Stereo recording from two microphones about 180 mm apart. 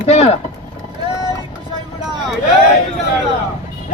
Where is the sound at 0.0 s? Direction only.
35° left (ahead or behind).